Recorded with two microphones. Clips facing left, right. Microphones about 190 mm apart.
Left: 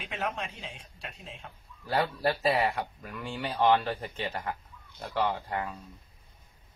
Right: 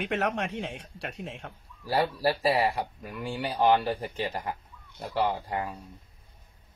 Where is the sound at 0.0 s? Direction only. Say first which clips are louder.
Right 6 dB; 75° right (ahead or behind).